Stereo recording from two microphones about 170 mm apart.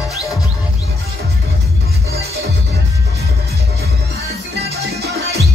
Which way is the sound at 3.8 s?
70° right (ahead or behind).